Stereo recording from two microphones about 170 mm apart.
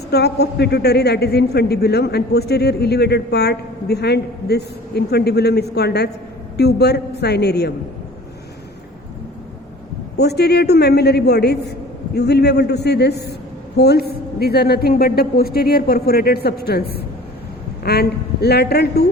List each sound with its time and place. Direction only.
0.1 s a man's voice: 75° left (ahead or behind)
10.2 s a man's voice: 75° left (ahead or behind)